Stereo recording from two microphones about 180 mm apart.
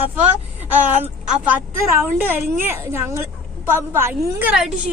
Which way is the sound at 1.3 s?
10° right (ahead or behind).